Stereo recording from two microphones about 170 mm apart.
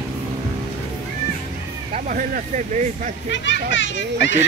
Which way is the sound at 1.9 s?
50° right (ahead or behind).